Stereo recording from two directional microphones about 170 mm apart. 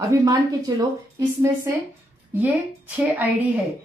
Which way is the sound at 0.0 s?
20° right (ahead or behind).